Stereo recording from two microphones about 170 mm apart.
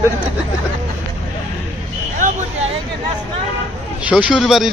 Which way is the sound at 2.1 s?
50° right (ahead or behind).